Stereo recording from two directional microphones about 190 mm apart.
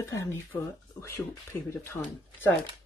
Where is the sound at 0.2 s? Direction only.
15° left (ahead or behind).